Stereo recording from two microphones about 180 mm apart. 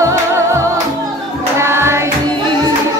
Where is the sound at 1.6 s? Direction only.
15° right (ahead or behind).